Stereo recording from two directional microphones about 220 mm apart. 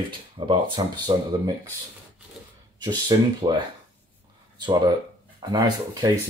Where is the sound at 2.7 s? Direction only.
20° right (ahead or behind).